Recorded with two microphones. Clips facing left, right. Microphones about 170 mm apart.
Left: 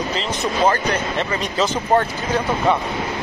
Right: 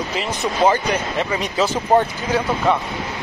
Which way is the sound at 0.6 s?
15° right (ahead or behind).